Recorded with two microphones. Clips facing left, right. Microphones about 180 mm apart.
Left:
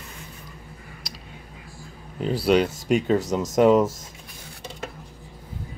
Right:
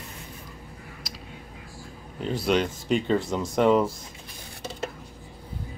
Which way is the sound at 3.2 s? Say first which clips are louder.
Left 3 dB; 40° left (ahead or behind).